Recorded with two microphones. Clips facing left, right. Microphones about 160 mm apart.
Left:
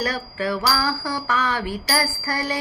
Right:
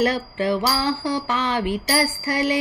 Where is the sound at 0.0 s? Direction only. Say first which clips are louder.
Right 4 dB; 20° right (ahead or behind).